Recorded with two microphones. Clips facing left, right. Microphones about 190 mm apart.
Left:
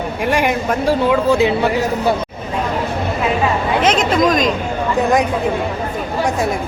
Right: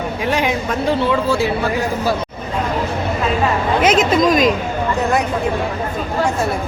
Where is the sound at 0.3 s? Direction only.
10° left (ahead or behind).